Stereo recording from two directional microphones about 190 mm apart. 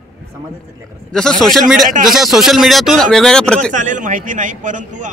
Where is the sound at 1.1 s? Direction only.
5° left (ahead or behind).